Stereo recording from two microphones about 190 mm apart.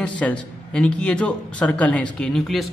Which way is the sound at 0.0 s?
5° left (ahead or behind).